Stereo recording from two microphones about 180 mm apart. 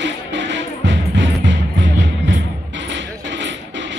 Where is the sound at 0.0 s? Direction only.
80° right.